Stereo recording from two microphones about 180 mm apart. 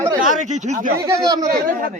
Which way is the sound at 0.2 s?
45° right (ahead or behind).